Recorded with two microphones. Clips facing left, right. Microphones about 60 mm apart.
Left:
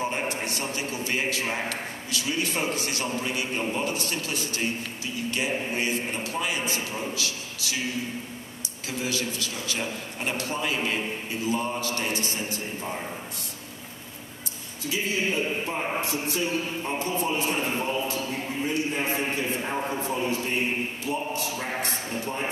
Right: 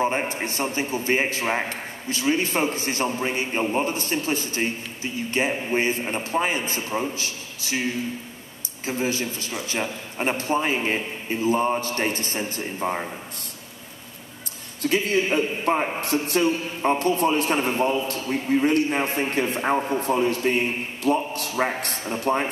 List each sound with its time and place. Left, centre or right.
0.0 s a man's voice: right
8.8 s a man's voice: right
14.8 s a man's voice: right